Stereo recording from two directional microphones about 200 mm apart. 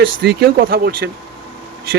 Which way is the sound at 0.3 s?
50° right (ahead or behind).